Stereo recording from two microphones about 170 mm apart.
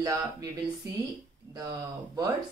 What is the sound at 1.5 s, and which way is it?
Speech, 20° right (ahead or behind).